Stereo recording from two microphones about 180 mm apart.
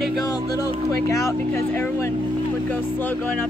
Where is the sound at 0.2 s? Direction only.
20° left (ahead or behind).